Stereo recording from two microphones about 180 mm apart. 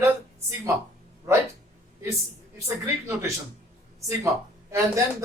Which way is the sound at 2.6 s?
15° right (ahead or behind).